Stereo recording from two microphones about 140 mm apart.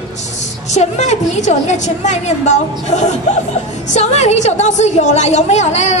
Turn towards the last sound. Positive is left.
turn(degrees=55)  # may be behind; listen again after turning